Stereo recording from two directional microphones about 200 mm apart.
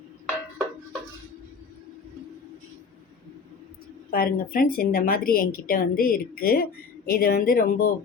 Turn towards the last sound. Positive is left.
turn(degrees=45)  # may be behind; listen again after turning